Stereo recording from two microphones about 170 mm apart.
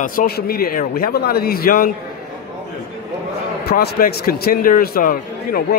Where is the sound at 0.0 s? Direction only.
55° left (ahead or behind).